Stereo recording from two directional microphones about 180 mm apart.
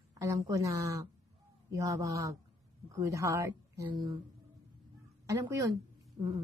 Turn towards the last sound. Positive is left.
turn(degrees=-20)  # may be behind; listen again after turning